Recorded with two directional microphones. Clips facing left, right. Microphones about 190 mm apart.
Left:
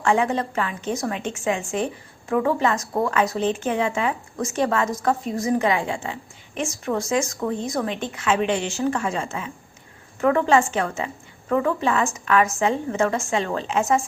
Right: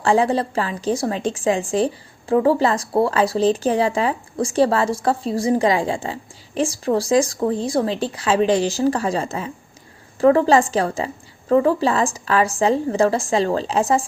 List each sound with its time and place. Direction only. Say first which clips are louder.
0.0 s a woman's voice: right 4 dB; 30° right (ahead or behind)